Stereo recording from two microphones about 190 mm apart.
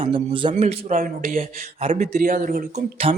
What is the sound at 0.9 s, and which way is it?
Speech, 50° right (ahead or behind).